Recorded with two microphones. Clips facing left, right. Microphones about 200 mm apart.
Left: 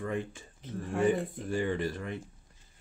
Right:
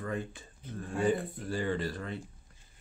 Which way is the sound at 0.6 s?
75° left (ahead or behind).